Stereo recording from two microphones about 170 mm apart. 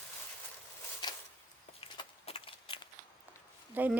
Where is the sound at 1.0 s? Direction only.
25° left (ahead or behind).